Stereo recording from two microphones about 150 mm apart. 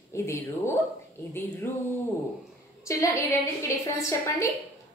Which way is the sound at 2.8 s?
20° left (ahead or behind).